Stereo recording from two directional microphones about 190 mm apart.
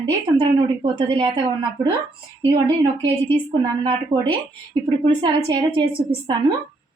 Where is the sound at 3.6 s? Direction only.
25° right (ahead or behind).